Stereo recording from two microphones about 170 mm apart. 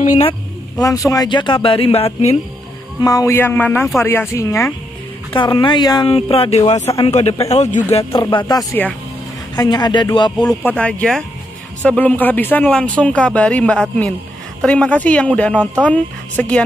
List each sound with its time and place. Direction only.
0.0 s a sound: 45° left (ahead or behind)
0.7 s speech: 20° left (ahead or behind); by 2.3 s 35° left (ahead or behind)
3.0 s speech: 20° left (ahead or behind)
5.3 s a man's voice: 30° left (ahead or behind)
8.0 s speech: 25° left (ahead or behind)
10.3 s speech: 5° left (ahead or behind)